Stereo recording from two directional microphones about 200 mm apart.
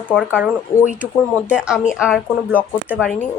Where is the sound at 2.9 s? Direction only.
Centre (ahead or behind).